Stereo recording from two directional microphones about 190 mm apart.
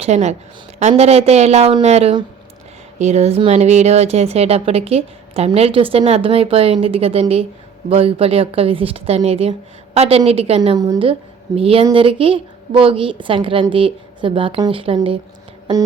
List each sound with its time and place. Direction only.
0.0 s speech: 35° right (ahead or behind)
10.8 s a woman's voice: 20° right (ahead or behind)